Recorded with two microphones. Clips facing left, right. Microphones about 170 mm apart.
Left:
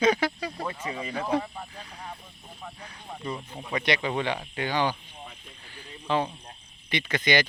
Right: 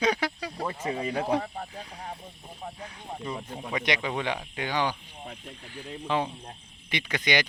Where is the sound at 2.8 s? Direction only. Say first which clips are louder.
Right 2 dB; centre (ahead or behind).